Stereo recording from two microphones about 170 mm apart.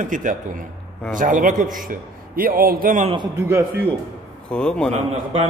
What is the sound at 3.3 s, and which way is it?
Speech, 15° right (ahead or behind).